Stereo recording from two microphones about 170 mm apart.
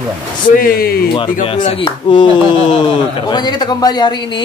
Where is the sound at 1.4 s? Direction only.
30° left (ahead or behind).